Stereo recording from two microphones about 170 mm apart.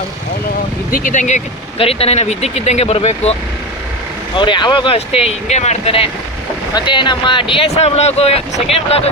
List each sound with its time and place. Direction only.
0.9 s speech: 55° left (ahead or behind)
1.8 s speech: 35° left (ahead or behind)
4.4 s speech: 25° left (ahead or behind)